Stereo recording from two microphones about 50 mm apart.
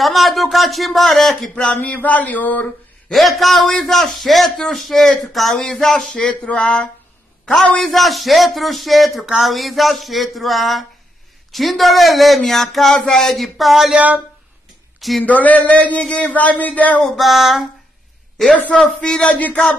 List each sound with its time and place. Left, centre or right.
0.0 s speech: centre
1.5 s a sound: left
1.8 s a man's voice: left
3.1 s a man's voice: centre
6.1 s a sound: left
7.5 s a man's voice: centre
12.9 s speech: centre
13.3 s a man's voice: centre
13.9 s speech: right
15.0 s speech: centre
15.2 s a man's voice: left
17.0 s a man's voice: centre
18.7 s a sound: centre